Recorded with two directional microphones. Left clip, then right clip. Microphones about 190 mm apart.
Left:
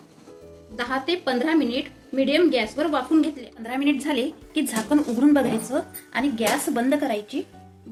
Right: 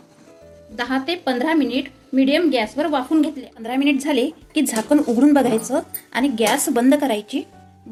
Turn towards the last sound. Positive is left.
turn(degrees=-45)  # may be behind; listen again after turning